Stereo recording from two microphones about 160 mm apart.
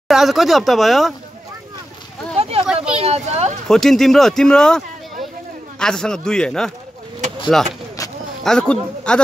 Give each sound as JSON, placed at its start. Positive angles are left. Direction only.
{"t": 0.1, "sound": "speech", "side_deg": 0}
{"t": 2.3, "sound": "a sound", "side_deg": -40}
{"t": 2.6, "sound": "speech", "side_deg": -5}
{"t": 3.0, "sound": "speech", "side_deg": -40}
{"t": 3.6, "sound": "speech", "side_deg": 0}